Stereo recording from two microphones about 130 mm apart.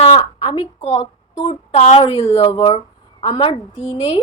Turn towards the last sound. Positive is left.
turn(degrees=45)  # may be behind; listen again after turning